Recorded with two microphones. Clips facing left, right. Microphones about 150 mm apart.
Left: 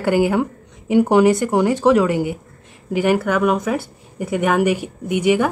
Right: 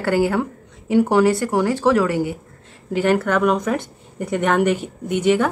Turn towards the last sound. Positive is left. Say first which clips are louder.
# left 1 dB
turn(degrees=10)  # may be behind; listen again after turning